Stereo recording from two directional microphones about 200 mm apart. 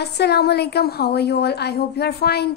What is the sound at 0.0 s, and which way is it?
A woman's voice, 55° left (ahead or behind).